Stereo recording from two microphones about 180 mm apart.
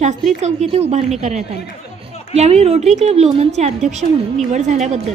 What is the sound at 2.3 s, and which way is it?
A woman's voice, 35° right (ahead or behind).